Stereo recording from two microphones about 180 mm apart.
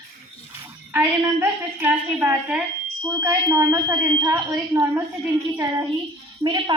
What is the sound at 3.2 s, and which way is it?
A woman's voice, 20° right (ahead or behind).